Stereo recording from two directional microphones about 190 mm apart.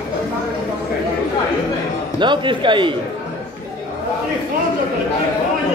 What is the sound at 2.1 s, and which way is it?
Speech, 25° right (ahead or behind).